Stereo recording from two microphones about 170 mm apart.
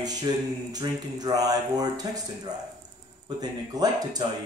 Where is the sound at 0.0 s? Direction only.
25° right (ahead or behind).